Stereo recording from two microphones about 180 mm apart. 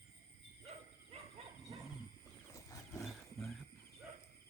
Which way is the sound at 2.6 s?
15° left (ahead or behind).